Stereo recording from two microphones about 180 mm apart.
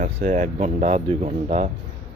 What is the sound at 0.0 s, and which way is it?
Speech, 50° right (ahead or behind).